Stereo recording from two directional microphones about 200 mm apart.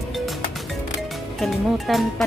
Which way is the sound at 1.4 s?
Centre (ahead or behind).